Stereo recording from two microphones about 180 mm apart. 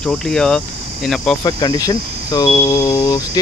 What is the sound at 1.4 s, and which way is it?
Speech, 20° left (ahead or behind).